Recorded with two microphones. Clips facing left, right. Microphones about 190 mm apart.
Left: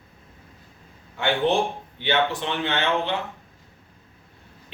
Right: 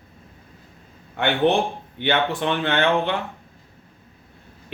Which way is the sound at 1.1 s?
60° right (ahead or behind).